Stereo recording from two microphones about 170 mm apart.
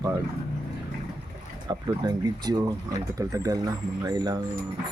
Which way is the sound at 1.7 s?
25° right (ahead or behind).